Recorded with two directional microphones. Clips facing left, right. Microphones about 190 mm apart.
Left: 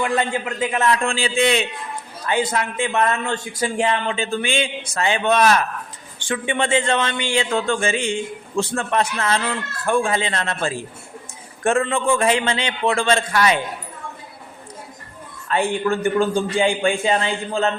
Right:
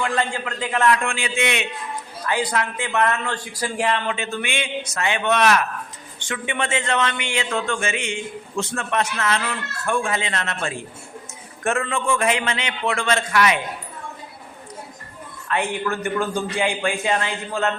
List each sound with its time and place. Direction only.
0.0 s a man's voice: 20° left (ahead or behind)
1.0 s a man's voice: 35° left (ahead or behind)
15.4 s a man's voice: 30° left (ahead or behind)